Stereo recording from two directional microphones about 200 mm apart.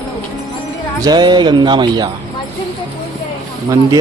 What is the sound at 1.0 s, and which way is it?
Speech, 20° right (ahead or behind).